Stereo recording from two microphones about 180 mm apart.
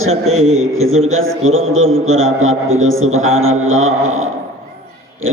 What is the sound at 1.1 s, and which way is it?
A man's voice, 90° right.